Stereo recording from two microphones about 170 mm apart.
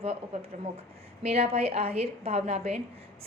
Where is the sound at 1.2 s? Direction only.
35° right (ahead or behind).